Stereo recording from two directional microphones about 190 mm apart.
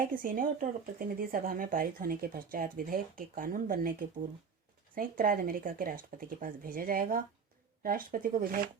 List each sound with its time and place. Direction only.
0.1 s speech: 45° right (ahead or behind)
4.9 s speech: 45° right (ahead or behind)